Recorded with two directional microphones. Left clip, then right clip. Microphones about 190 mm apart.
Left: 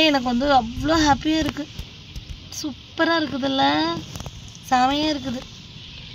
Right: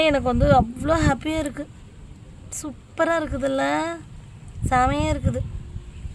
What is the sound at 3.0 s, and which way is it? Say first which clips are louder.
Speech: left 1 dB; 25° right (ahead or behind).